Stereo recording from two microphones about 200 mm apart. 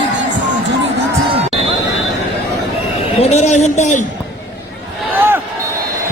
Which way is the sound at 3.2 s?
35° left (ahead or behind).